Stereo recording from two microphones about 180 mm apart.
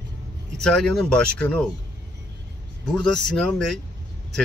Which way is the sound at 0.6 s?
Centre (ahead or behind).